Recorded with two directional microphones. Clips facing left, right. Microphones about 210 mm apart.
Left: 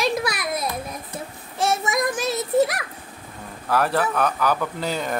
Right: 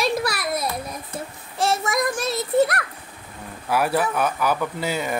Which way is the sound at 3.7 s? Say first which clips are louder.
Even; 10° right (ahead or behind).